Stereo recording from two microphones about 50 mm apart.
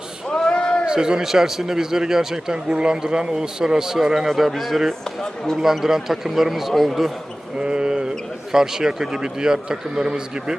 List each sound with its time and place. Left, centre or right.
0.3 s a sound: centre
0.9 s a man's voice: centre
5.0 s speech: centre
5.5 s a man's voice: centre
7.6 s a man's voice: centre